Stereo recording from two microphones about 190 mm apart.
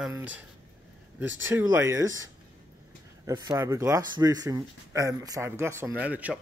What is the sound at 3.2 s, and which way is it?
Speech, 20° right (ahead or behind).